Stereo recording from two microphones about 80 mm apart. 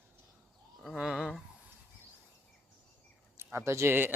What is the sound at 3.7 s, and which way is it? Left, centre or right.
Speech, right.